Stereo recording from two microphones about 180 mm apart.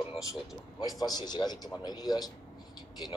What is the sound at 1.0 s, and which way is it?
Speech, 20° left (ahead or behind).